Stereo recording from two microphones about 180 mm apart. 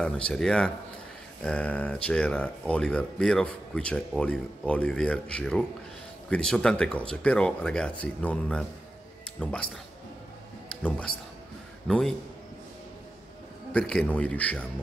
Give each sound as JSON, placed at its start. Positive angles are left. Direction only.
{"t": 0.0, "sound": "a man's voice", "side_deg": 5}
{"t": 10.7, "sound": "speech", "side_deg": 5}
{"t": 13.7, "sound": "a man's voice", "side_deg": 5}